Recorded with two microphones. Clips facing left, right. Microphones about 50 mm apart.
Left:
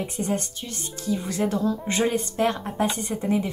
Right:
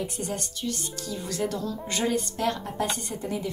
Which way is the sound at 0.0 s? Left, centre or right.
Left.